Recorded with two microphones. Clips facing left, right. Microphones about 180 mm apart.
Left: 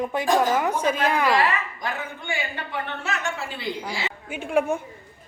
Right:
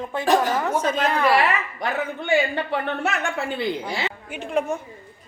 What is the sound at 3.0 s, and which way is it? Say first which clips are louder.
A woman's voice: right 4 dB; 60° right (ahead or behind).